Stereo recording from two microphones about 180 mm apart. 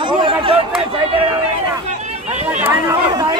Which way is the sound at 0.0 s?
30° right (ahead or behind).